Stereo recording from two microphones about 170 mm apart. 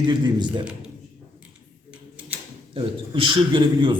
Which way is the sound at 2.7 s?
30° right (ahead or behind).